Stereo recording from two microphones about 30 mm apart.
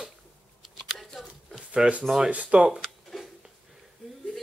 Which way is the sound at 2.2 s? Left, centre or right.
Right.